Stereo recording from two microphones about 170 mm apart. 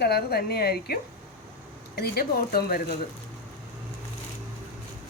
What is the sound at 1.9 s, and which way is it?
Speech, 65° left (ahead or behind).